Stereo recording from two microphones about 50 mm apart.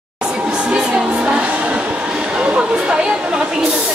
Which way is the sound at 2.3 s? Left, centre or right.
Right.